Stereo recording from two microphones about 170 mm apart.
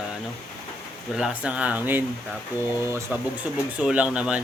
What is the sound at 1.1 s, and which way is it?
Speech, 5° right (ahead or behind).